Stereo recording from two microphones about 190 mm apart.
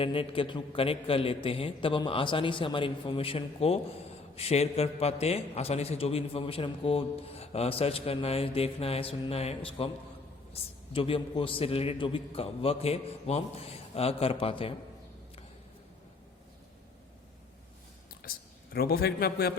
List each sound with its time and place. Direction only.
0.0 s a man's voice: 30° left (ahead or behind)
18.3 s a sound: 50° left (ahead or behind)
18.7 s a man's voice: 55° left (ahead or behind)